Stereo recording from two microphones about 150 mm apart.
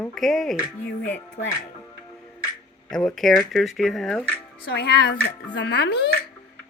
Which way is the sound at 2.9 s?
5° left (ahead or behind).